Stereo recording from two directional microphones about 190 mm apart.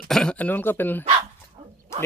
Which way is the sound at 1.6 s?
30° right (ahead or behind).